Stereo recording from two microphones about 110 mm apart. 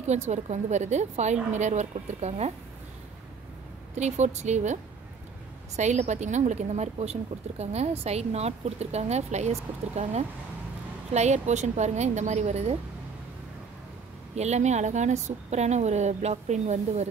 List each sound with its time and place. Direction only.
0.3 s a woman's voice: 90° right
3.9 s a woman's voice: 90° right
5.8 s a woman's voice: 90° right
14.3 s a woman's voice: 90° right